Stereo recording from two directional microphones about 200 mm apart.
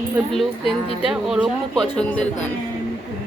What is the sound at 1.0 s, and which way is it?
Speech, 5° right (ahead or behind).